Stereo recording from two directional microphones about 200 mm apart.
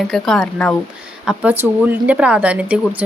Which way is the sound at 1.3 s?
10° right (ahead or behind).